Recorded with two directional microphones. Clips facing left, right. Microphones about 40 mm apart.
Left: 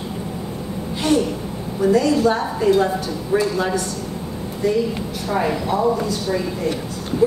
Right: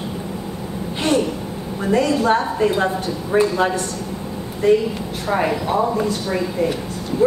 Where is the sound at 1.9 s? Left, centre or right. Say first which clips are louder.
Right 2 dB; right.